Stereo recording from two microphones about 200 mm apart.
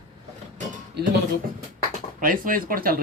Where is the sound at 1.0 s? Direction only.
55° right (ahead or behind).